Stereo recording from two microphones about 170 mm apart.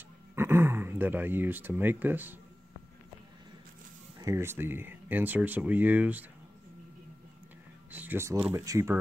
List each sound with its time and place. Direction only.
0.4 s speech: 15° right (ahead or behind)
4.2 s speech: 15° right (ahead or behind)
7.9 s speech: 10° right (ahead or behind)